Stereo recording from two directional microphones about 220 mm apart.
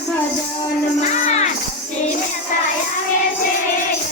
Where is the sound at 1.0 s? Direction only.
30° left (ahead or behind).